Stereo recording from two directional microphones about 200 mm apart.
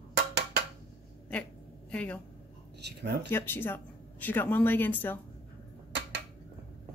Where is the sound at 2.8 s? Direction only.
55° right (ahead or behind).